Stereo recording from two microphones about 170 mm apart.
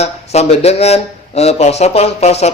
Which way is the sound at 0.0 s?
40° left (ahead or behind).